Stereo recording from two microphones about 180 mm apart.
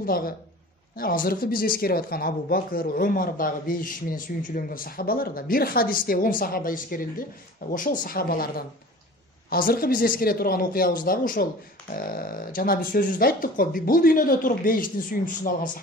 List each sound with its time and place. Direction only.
0.0 s speech: 55° left (ahead or behind)